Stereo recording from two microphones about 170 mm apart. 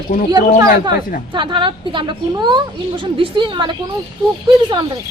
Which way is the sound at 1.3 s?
30° right (ahead or behind).